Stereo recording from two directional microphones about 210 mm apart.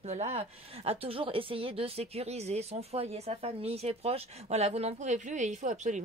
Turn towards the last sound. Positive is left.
turn(degrees=-35)  # may be behind; listen again after turning